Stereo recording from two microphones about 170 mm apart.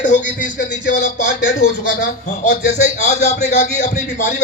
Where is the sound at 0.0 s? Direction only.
45° left (ahead or behind).